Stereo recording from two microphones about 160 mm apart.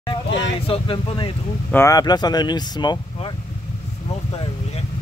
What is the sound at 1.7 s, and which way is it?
Speech, 15° left (ahead or behind).